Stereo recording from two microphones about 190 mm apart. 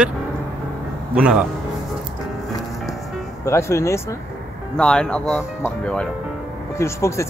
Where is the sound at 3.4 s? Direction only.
15° left (ahead or behind).